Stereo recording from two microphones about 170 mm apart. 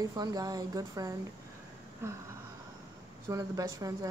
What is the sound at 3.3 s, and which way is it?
Speech, 20° right (ahead or behind).